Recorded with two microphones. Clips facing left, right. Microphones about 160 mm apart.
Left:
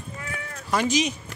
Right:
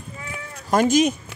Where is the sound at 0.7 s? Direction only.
50° right (ahead or behind).